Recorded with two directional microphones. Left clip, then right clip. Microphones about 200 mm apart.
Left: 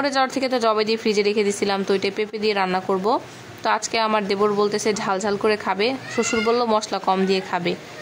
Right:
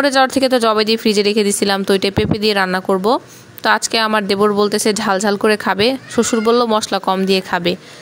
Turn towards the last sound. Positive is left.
turn(degrees=-40)  # may be behind; listen again after turning